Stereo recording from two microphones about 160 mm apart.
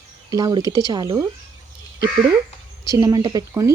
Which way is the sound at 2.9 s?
25° right (ahead or behind).